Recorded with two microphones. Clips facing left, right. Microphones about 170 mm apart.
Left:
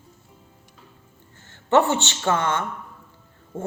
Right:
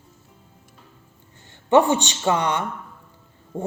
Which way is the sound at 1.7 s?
15° right (ahead or behind).